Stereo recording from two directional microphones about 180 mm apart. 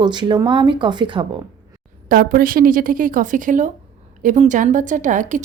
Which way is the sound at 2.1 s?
50° right (ahead or behind).